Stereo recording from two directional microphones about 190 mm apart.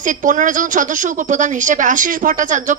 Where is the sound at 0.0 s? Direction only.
45° right (ahead or behind).